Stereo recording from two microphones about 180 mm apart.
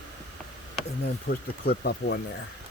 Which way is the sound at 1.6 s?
60° left (ahead or behind).